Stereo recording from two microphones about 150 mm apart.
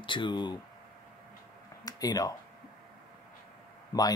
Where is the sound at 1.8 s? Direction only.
25° left (ahead or behind).